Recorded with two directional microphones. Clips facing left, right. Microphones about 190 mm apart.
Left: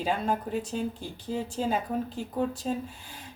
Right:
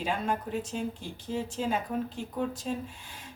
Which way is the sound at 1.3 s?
40° left (ahead or behind).